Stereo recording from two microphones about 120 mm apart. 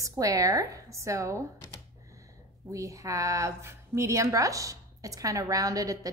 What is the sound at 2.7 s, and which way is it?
A woman's voice, 25° right (ahead or behind).